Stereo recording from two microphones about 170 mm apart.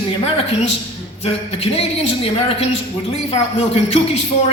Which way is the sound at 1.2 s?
35° left (ahead or behind).